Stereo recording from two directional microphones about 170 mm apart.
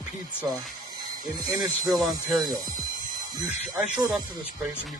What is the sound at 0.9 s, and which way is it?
Music, 25° right (ahead or behind).